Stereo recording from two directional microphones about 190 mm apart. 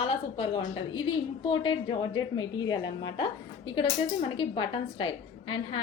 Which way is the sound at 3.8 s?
25° left (ahead or behind).